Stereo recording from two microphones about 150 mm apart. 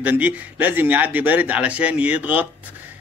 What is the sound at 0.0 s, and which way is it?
Speech, 10° right (ahead or behind).